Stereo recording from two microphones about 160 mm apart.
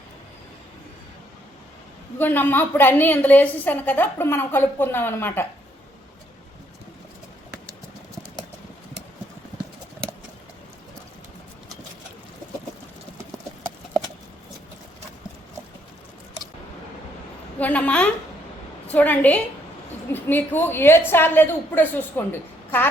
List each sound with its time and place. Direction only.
2.1 s a woman's voice: 10° left (ahead or behind)
17.6 s a sound: 10° left (ahead or behind)
20.1 s a woman's voice: 15° left (ahead or behind)